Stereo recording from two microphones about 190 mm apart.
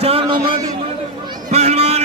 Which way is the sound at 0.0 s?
30° right (ahead or behind).